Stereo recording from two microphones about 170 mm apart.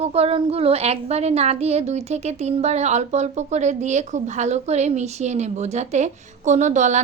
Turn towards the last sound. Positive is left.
turn(degrees=-45)  # may be behind; listen again after turning